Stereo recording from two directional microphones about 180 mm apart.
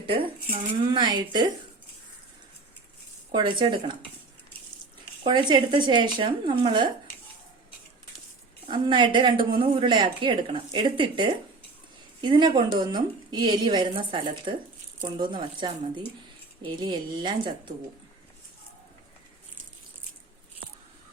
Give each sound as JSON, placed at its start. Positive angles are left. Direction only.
{"t": 0.0, "sound": "a woman's voice", "side_deg": -30}
{"t": 3.3, "sound": "a woman's voice", "side_deg": -25}
{"t": 5.2, "sound": "a woman's voice", "side_deg": -25}
{"t": 8.6, "sound": "a woman's voice", "side_deg": -25}